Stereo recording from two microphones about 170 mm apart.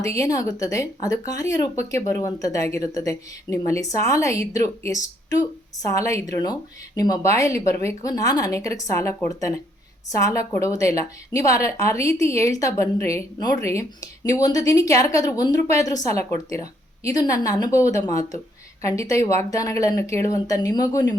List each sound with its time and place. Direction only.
0.0 s a woman's voice: 20° left (ahead or behind)